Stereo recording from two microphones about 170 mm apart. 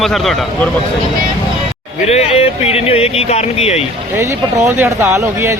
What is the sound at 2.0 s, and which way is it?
Speech, 35° left (ahead or behind).